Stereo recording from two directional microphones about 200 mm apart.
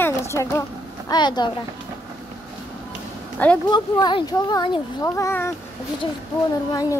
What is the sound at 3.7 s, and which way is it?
Speech, 20° left (ahead or behind).